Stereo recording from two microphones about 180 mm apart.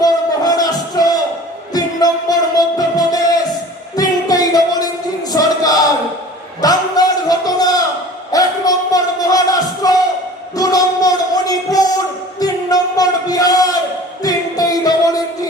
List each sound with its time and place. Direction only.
0.0 s music: 20° left (ahead or behind)
5.3 s a sound: 20° left (ahead or behind)
10.6 s music: 20° left (ahead or behind)